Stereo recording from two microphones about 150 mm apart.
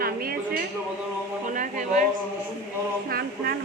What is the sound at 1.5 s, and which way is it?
Speech, 60° right (ahead or behind).